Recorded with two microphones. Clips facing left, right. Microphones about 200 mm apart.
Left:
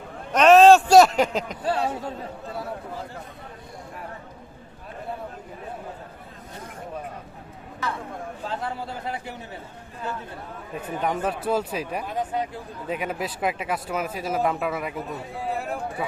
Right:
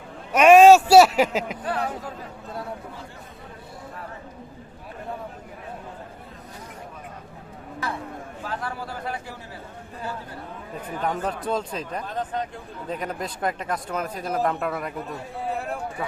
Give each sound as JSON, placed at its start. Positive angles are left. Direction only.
{"t": 0.3, "sound": "a sound", "side_deg": -10}
{"t": 1.6, "sound": "a man's voice", "side_deg": 30}
{"t": 8.4, "sound": "a man's voice", "side_deg": 25}
{"t": 10.9, "sound": "a man's voice", "side_deg": 20}
{"t": 11.2, "sound": "speech", "side_deg": 5}